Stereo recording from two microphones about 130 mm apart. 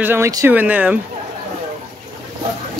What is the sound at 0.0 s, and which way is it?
Speech, 15° right (ahead or behind).